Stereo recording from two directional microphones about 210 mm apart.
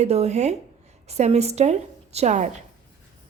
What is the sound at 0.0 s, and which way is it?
A woman's voice, 30° right (ahead or behind).